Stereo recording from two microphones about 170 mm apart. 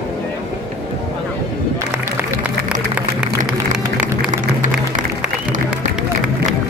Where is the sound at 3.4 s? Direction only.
50° right (ahead or behind).